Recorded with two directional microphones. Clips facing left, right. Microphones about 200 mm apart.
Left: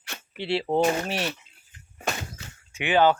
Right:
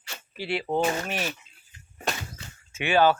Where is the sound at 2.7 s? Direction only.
15° left (ahead or behind).